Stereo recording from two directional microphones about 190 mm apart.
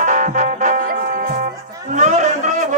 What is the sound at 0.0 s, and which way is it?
Music, 40° right (ahead or behind).